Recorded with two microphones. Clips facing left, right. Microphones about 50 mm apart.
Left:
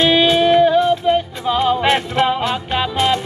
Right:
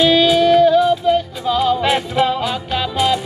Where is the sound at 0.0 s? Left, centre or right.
Left.